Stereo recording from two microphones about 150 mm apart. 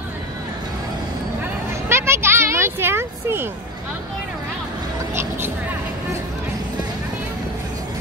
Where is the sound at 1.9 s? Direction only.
15° right (ahead or behind).